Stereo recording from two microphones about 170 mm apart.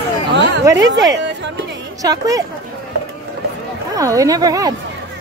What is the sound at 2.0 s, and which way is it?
Speech, 20° right (ahead or behind).